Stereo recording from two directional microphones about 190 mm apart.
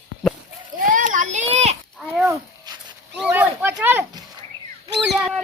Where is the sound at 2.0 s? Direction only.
Centre (ahead or behind).